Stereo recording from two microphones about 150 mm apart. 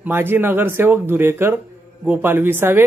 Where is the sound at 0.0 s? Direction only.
15° right (ahead or behind).